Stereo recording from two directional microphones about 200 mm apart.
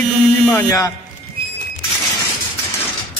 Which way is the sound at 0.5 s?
15° left (ahead or behind).